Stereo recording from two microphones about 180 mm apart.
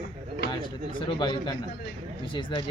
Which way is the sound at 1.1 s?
25° left (ahead or behind).